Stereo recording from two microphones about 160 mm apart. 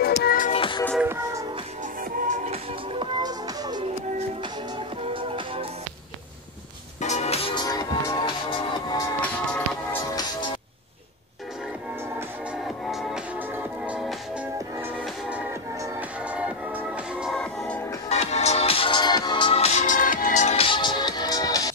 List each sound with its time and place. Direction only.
0.0 s music: 70° left (ahead or behind)
0.5 s music: 30° left (ahead or behind)
1.0 s music: 15° right (ahead or behind)
2.2 s music: 40° right (ahead or behind)
3.2 s music: 25° right (ahead or behind)
5.0 s music: 35° right (ahead or behind)
7.0 s music: 45° left (ahead or behind)
7.6 s music: 25° left (ahead or behind)
12.6 s music: centre (ahead or behind)
16.3 s music: 10° right (ahead or behind)
18.1 s music: 45° left (ahead or behind)
20.5 s music: 30° left (ahead or behind)